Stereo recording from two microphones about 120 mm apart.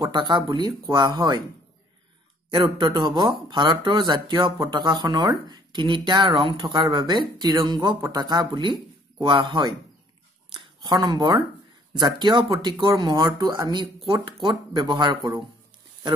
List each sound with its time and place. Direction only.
0.0 s speech: 40° right (ahead or behind)
2.5 s speech: 40° right (ahead or behind)